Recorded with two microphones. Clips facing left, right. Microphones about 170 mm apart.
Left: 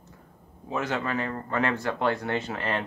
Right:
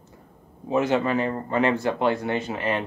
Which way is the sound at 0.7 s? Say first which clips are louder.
Right 7 dB; 20° right (ahead or behind).